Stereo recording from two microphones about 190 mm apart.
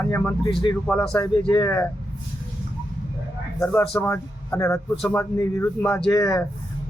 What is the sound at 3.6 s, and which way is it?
Speech, 10° left (ahead or behind).